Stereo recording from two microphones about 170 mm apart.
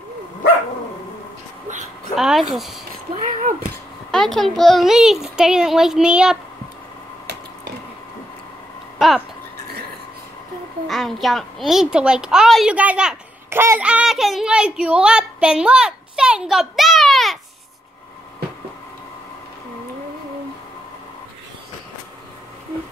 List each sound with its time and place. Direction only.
2.1 s speech: centre (ahead or behind)
3.3 s speech: 45° right (ahead or behind)
4.1 s speech: 5° left (ahead or behind)
8.9 s a sound: centre (ahead or behind)
10.9 s a child's voice: centre (ahead or behind)